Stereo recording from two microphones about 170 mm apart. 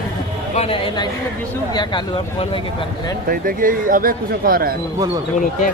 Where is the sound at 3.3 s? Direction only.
55° right (ahead or behind).